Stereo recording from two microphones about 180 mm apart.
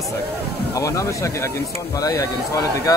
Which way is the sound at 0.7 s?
15° left (ahead or behind).